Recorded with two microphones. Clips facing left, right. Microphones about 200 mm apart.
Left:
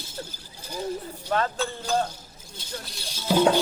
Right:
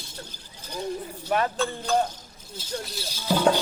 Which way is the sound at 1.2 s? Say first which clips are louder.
Right 2 dB; 15° right (ahead or behind).